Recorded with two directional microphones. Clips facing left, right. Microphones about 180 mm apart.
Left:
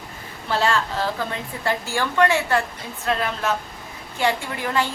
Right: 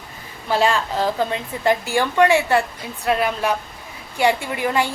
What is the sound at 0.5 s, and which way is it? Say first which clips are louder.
A woman's voice: right 3 dB; 15° right (ahead or behind).